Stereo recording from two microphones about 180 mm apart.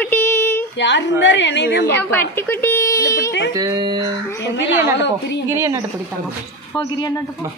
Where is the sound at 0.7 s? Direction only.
80° left.